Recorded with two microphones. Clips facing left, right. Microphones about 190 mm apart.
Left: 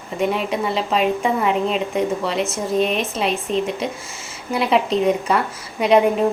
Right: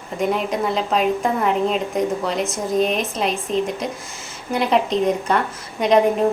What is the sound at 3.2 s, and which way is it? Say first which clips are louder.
A woman's voice: left 1 dB; 5° left (ahead or behind).